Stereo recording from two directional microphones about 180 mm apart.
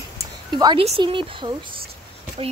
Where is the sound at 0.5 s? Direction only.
25° right (ahead or behind).